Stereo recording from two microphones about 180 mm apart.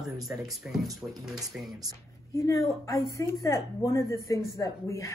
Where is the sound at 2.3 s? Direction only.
15° left (ahead or behind).